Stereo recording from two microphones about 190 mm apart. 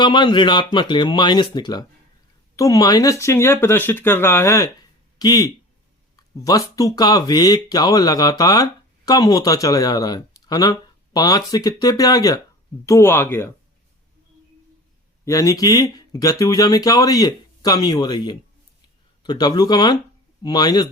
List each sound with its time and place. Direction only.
0.0 s speech: 25° left (ahead or behind)
15.2 s speech: 15° left (ahead or behind)